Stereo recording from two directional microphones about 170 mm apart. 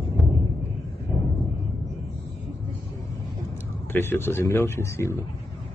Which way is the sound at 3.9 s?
15° left (ahead or behind).